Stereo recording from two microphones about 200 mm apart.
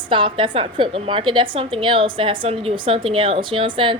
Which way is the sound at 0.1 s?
25° right (ahead or behind).